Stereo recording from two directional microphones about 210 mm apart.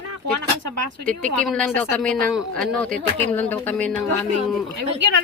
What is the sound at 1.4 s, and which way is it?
Speech, 5° left (ahead or behind).